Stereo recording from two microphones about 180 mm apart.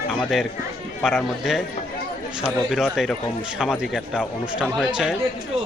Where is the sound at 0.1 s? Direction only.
Centre (ahead or behind).